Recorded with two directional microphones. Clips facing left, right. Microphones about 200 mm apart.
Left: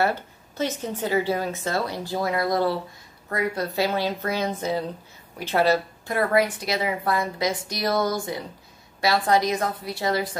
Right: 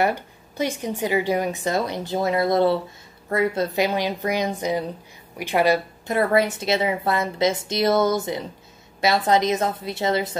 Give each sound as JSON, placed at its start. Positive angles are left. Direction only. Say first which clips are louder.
{"t": 0.0, "sound": "a woman's voice", "louder": "right 2 dB", "side_deg": -15}